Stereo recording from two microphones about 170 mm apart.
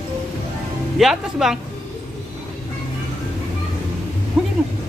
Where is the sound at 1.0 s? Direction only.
Centre (ahead or behind).